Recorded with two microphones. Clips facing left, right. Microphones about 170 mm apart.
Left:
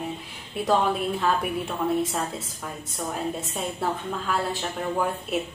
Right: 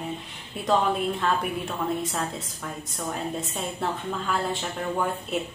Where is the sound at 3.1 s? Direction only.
Centre (ahead or behind).